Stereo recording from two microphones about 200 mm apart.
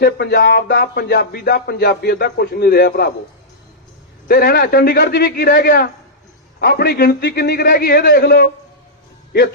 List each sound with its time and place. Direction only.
0.0 s speech: 55° left (ahead or behind)
4.3 s speech: 50° left (ahead or behind)